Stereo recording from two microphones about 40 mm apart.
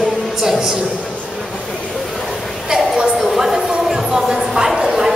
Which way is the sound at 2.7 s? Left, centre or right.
Centre.